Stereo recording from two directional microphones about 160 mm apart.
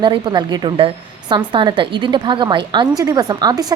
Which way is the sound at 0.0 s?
30° right (ahead or behind).